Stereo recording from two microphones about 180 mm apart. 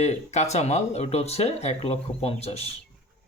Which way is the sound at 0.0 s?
40° left (ahead or behind).